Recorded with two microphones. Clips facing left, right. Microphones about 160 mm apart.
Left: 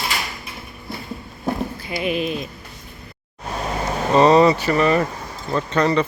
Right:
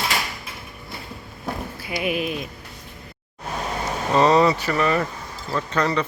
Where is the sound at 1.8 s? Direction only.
5° right (ahead or behind).